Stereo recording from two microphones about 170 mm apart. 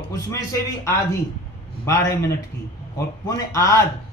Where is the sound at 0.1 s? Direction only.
20° left (ahead or behind).